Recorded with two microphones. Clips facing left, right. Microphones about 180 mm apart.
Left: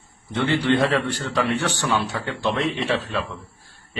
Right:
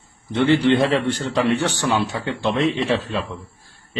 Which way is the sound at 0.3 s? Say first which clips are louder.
Right 4 dB; 20° right (ahead or behind).